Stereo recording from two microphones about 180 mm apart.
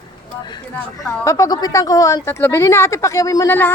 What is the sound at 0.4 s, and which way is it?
Speech, 25° left (ahead or behind).